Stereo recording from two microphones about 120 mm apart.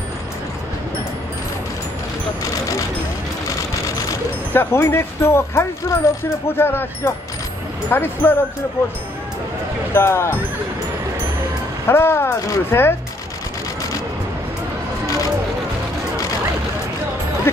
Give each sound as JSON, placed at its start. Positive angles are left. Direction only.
{"t": 4.6, "sound": "speech", "side_deg": 20}
{"t": 9.9, "sound": "speech", "side_deg": 20}
{"t": 11.9, "sound": "speech", "side_deg": 20}